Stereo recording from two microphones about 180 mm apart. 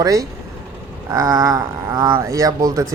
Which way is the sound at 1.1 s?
20° right (ahead or behind).